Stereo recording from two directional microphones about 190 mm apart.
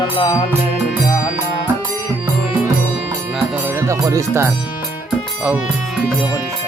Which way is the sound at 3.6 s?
15° right (ahead or behind).